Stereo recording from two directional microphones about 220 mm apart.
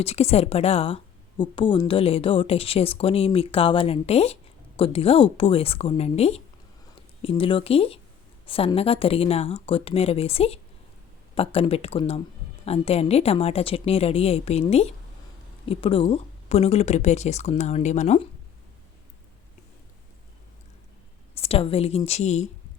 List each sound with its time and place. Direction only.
0.0 s a woman's voice: 30° left (ahead or behind)
21.3 s a woman's voice: 25° left (ahead or behind)